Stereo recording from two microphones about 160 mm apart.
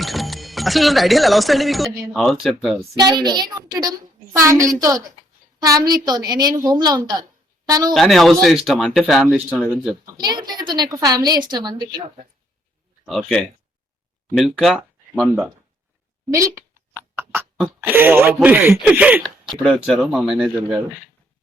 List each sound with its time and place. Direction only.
0.0 s speech: centre (ahead or behind)
2.9 s a woman's voice: 25° right (ahead or behind)
7.9 s speech: centre (ahead or behind)
10.2 s a woman's voice: 25° right (ahead or behind)
13.1 s speech: centre (ahead or behind)
16.3 s a sound: 20° right (ahead or behind)
17.6 s speech: 10° right (ahead or behind)